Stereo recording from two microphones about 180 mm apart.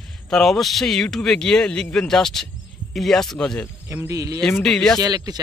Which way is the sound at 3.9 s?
15° right (ahead or behind).